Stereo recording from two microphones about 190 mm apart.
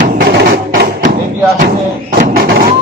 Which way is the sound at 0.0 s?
45° right (ahead or behind).